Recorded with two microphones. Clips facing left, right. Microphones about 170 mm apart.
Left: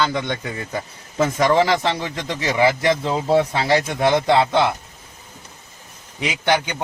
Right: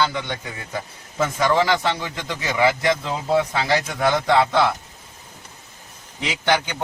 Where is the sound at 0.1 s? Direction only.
35° left (ahead or behind).